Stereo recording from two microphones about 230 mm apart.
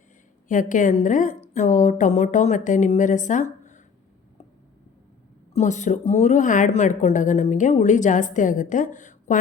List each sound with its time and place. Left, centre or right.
0.4 s a woman's voice: left
5.5 s a woman's voice: left